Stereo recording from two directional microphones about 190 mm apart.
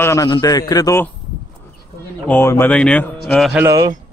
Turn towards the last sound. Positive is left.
turn(degrees=-15)  # may be behind; listen again after turning